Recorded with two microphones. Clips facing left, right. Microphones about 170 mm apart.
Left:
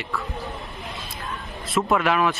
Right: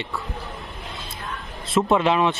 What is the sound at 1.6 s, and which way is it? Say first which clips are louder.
Speech: right 2 dB; 25° right (ahead or behind).